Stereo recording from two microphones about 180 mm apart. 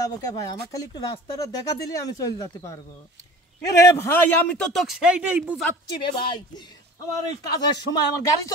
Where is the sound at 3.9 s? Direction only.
10° left (ahead or behind); by 5.6 s 10° right (ahead or behind).